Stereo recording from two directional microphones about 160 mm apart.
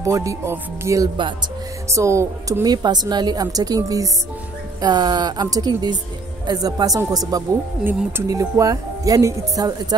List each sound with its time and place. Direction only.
0.0 s a woman's voice: 20° right (ahead or behind)
1.9 s a woman's voice: 20° right (ahead or behind)